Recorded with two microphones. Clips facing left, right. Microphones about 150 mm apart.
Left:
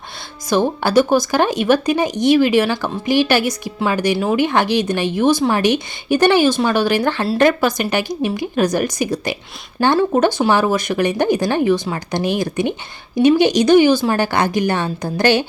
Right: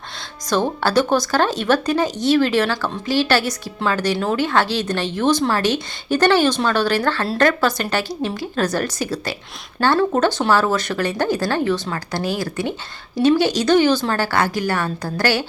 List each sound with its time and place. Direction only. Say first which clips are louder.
0.5 s speech: left 3 dB; 15° left (ahead or behind)